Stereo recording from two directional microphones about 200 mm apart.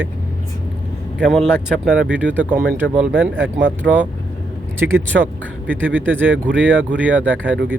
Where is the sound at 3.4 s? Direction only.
70° right (ahead or behind).